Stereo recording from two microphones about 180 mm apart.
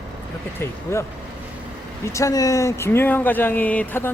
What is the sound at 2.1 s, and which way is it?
Speech, 15° left (ahead or behind).